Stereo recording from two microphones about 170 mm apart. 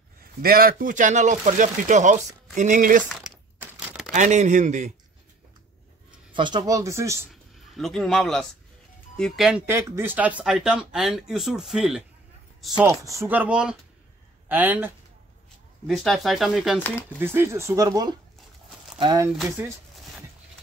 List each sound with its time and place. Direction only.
0.2 s speech: 60° right (ahead or behind)
3.2 s crumpling: 5° right (ahead or behind)
4.1 s speech: 45° right (ahead or behind)
6.3 s speech: 25° right (ahead or behind)
7.7 s speech: centre (ahead or behind)
9.7 s speech: 15° right (ahead or behind)
12.8 s speech: 15° right (ahead or behind)
15.9 s speech: centre (ahead or behind)
17.2 s speech: 15° right (ahead or behind)